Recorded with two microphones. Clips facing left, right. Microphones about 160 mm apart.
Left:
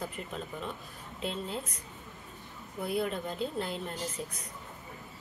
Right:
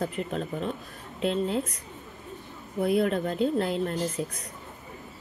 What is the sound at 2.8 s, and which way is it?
Speech, 60° right (ahead or behind).